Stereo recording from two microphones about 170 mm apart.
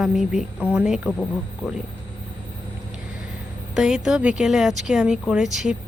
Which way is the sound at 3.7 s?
5° right (ahead or behind).